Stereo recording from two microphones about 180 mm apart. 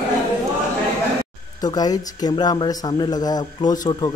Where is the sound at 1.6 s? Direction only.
20° left (ahead or behind).